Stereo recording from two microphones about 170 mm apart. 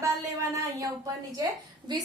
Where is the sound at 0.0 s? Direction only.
20° right (ahead or behind).